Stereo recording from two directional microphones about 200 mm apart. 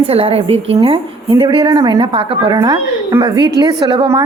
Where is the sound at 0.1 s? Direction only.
30° right (ahead or behind).